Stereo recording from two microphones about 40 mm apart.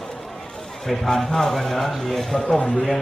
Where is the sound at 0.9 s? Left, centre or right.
Centre.